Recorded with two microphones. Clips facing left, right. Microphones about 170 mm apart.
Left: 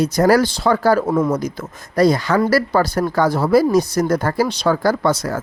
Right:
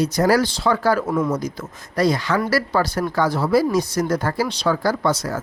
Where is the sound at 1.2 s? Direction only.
55° left (ahead or behind).